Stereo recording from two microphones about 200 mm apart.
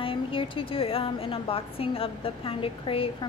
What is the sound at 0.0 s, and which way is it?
A woman's voice, 25° left (ahead or behind).